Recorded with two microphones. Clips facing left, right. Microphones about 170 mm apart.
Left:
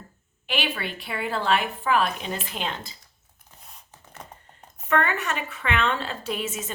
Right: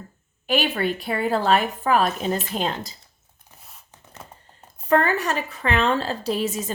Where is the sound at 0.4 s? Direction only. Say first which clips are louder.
Right 7 dB; 45° right (ahead or behind).